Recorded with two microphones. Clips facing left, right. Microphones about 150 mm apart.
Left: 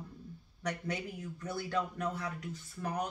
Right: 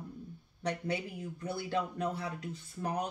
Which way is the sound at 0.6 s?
30° right (ahead or behind).